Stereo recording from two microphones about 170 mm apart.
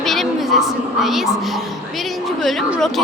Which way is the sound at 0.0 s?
Centre (ahead or behind).